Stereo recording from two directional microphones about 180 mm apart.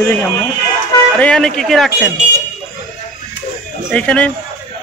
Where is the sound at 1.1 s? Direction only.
5° left (ahead or behind).